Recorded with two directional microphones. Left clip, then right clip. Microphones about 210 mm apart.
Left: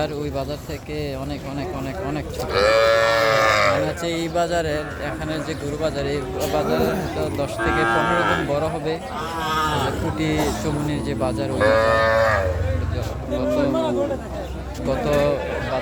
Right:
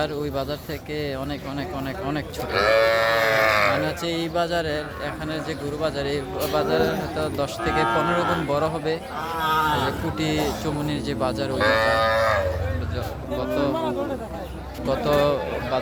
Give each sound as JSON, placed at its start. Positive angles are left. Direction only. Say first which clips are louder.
{"t": 2.5, "sound": "speech", "louder": "left 2 dB", "side_deg": -40}
{"t": 3.8, "sound": "mantra", "louder": "left 2 dB", "side_deg": -5}
{"t": 5.8, "sound": "mantra", "louder": "left 2 dB", "side_deg": -5}
{"t": 6.5, "sound": "cattle", "louder": "even", "side_deg": -10}
{"t": 7.9, "sound": "speech", "louder": "left 3 dB", "side_deg": 45}
{"t": 8.4, "sound": "cattle", "louder": "left 1 dB", "side_deg": -15}
{"t": 9.4, "sound": "speech", "louder": "right 1 dB", "side_deg": -45}
{"t": 10.2, "sound": "cattle", "louder": "left 2 dB", "side_deg": -5}
{"t": 14.8, "sound": "cattle", "louder": "left 1 dB", "side_deg": -15}